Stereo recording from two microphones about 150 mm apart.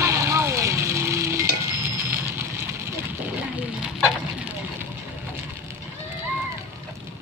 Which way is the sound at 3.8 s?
5° right (ahead or behind).